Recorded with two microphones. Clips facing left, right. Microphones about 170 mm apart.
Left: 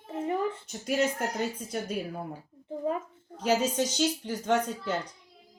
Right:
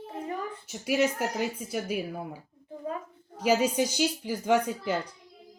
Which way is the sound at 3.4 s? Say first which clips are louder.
Right 2 dB; 10° right (ahead or behind).